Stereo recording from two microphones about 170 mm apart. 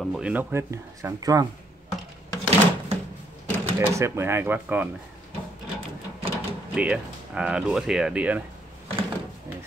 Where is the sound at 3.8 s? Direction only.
15° right (ahead or behind).